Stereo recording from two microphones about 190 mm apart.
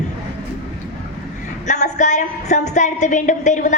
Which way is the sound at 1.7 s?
40° left (ahead or behind).